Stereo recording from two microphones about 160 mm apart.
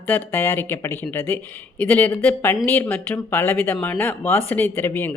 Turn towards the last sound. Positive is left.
turn(degrees=15)  # may be behind; listen again after turning